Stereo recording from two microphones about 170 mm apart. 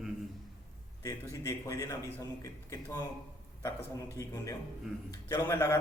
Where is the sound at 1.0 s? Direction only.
20° left (ahead or behind).